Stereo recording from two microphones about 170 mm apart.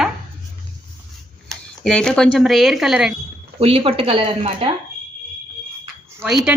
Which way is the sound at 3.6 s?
35° right (ahead or behind).